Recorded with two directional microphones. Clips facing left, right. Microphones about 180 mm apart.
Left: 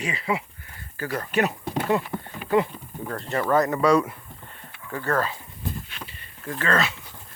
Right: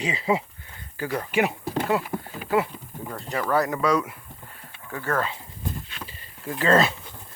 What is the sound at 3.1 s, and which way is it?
Speech, 5° right (ahead or behind).